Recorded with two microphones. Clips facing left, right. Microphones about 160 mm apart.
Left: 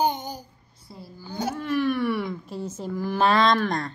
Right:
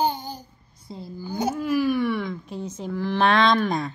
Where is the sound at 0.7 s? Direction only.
20° right (ahead or behind).